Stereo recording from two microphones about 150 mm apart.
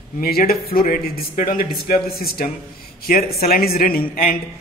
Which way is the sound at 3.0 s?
75° left (ahead or behind).